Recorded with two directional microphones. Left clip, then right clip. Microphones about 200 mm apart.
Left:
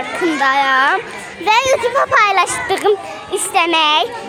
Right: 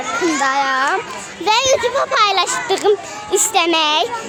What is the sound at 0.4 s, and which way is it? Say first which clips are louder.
A child's voice: left 6 dB; 5° left (ahead or behind).